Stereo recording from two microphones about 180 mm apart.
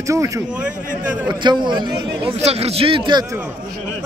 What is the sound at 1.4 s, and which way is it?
Speech, 25° right (ahead or behind).